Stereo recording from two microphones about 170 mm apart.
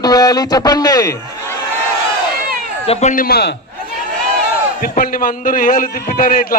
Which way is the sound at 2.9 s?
40° left (ahead or behind).